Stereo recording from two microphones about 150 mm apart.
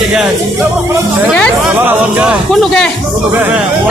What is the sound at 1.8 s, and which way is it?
Speech, 10° right (ahead or behind).